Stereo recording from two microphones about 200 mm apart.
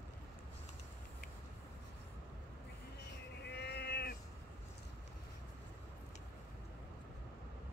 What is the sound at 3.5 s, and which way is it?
Sheep, 55° left (ahead or behind).